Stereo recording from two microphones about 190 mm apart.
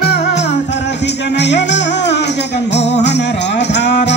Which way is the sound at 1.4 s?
65° left (ahead or behind).